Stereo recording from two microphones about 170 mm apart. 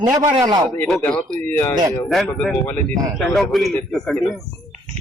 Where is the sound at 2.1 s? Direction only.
Centre (ahead or behind).